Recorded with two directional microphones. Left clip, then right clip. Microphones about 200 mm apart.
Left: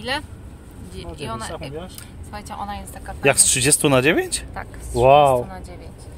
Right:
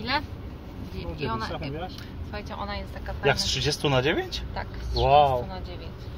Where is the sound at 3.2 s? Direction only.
65° left (ahead or behind).